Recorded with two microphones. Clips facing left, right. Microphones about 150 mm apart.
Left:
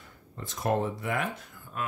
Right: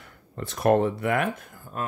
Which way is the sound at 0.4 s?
65° right (ahead or behind).